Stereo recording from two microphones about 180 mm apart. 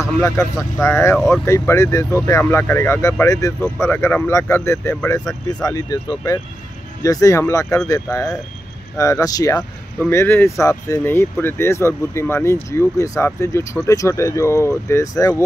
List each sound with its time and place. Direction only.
0.0 s speech: 15° left (ahead or behind)
9.6 s speech: 10° left (ahead or behind)